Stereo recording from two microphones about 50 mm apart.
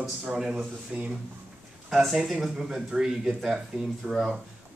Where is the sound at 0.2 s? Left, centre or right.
Centre.